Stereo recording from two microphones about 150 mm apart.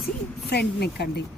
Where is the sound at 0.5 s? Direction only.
90° left.